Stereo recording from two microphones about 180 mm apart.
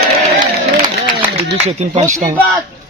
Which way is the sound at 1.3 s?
35° right (ahead or behind).